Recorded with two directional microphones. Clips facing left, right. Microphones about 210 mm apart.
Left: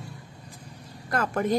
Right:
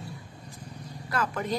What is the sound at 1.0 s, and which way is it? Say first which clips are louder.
Speech: left 4 dB; 50° left (ahead or behind).